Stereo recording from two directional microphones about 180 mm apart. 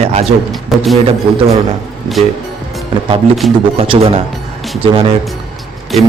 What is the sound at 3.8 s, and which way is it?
Speech, 30° right (ahead or behind).